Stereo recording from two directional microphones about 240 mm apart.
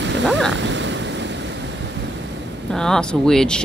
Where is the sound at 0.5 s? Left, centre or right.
Right.